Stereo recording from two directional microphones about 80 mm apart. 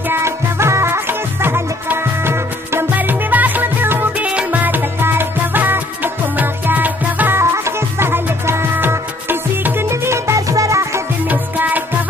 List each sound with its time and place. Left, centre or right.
0.1 s music: right
11.2 s music: right